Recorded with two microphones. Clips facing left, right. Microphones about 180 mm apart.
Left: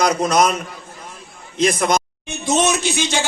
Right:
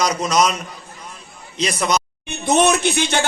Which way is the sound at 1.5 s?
50° left (ahead or behind).